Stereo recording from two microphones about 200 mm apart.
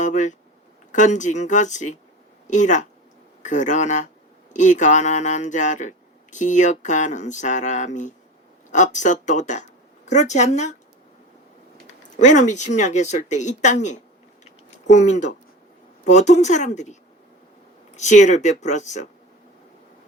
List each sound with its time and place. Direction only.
0.0 s speech: 40° left (ahead or behind)
12.2 s speech: 40° left (ahead or behind)